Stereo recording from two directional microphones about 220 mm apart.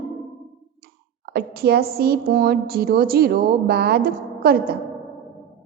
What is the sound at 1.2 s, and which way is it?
A woman's voice, 45° right (ahead or behind).